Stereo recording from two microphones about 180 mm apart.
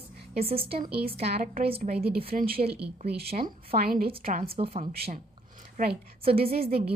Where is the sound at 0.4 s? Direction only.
30° right (ahead or behind).